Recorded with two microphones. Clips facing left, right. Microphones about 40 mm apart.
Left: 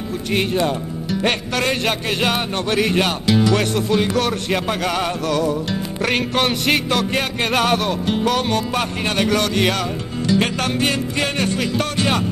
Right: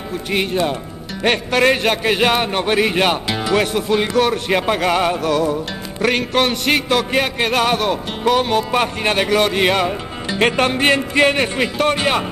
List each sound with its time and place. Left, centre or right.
0.3 s speech: centre
2.0 s speech: centre
4.1 s music: centre
4.5 s speech: centre
6.0 s music: centre; by 12.3 s right